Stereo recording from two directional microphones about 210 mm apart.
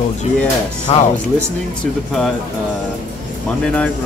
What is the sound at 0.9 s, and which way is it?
Speech, 30° left (ahead or behind).